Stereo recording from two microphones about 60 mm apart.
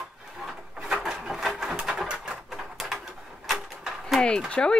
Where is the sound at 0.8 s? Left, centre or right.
Centre.